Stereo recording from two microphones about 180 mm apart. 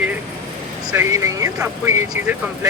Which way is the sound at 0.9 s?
15° right (ahead or behind).